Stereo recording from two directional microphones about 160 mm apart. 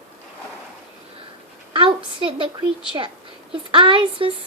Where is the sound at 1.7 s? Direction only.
30° right (ahead or behind).